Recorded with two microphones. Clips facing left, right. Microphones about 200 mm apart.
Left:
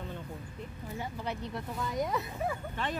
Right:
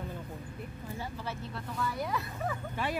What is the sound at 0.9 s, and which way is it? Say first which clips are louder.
Speech: left 3 dB; 15° left (ahead or behind).